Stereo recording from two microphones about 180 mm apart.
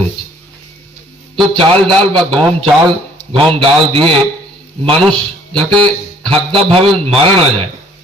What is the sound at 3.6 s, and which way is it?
Speech, 30° right (ahead or behind).